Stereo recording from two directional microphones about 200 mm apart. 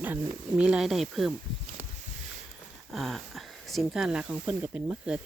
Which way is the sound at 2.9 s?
Centre (ahead or behind).